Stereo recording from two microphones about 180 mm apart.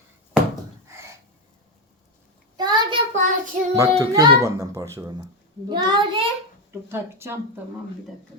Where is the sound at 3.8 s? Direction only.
20° right (ahead or behind).